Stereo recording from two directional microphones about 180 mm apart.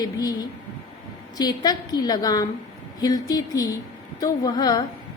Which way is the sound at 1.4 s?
20° left (ahead or behind).